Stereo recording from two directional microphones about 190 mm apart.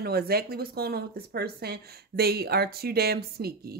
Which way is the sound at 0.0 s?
55° right (ahead or behind).